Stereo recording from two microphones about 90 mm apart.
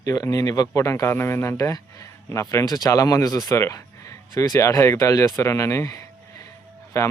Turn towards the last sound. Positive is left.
turn(degrees=35)  # may be behind; listen again after turning